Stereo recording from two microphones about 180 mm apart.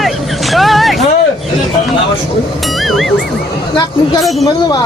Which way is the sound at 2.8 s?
Centre (ahead or behind).